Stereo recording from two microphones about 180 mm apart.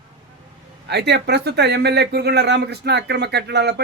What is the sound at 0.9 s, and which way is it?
Speech, 70° right (ahead or behind).